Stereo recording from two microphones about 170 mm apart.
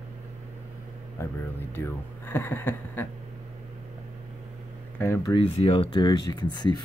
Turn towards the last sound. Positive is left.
turn(degrees=25)  # may be behind; listen again after turning